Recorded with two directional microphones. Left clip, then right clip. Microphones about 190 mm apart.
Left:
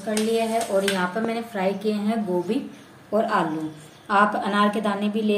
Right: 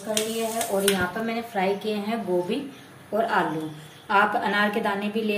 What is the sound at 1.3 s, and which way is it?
A woman's voice, 55° left (ahead or behind).